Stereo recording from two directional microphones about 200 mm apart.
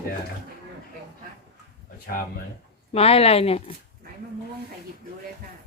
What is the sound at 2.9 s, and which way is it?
Speech, 30° left (ahead or behind).